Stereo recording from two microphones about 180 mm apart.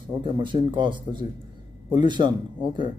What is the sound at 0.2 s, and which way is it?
Speech, 25° right (ahead or behind).